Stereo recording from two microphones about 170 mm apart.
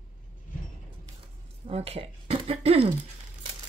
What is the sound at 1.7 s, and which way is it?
Speech, 35° right (ahead or behind).